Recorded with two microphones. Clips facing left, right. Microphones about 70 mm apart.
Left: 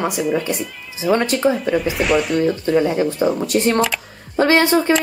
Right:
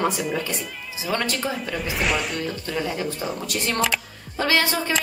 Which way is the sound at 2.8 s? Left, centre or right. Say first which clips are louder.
Left 7 dB; left.